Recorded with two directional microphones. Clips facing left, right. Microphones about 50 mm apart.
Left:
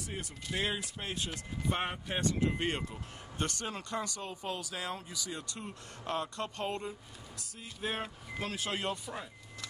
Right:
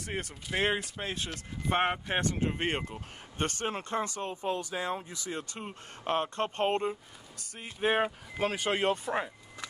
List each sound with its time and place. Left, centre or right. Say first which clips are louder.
0.0 s speech: right 5 dB; right
4.2 s speech: right 6 dB; right